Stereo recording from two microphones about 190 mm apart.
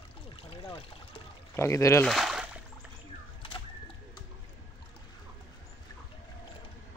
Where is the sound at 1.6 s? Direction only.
15° left (ahead or behind).